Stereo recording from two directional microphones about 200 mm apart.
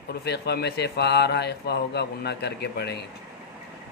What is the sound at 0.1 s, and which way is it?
A man's voice, 55° left (ahead or behind).